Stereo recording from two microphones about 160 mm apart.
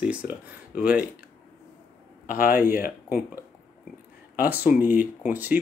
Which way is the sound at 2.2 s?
60° left (ahead or behind).